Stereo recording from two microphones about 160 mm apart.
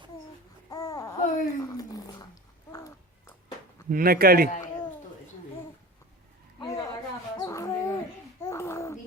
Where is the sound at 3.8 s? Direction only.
65° right (ahead or behind).